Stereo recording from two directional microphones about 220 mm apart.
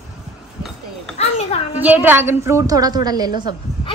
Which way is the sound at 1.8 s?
10° right (ahead or behind).